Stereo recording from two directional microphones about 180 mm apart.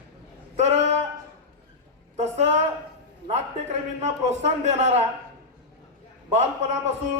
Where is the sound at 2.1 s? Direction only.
40° right (ahead or behind).